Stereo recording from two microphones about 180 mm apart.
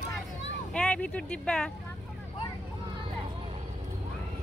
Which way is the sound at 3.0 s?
30° right (ahead or behind).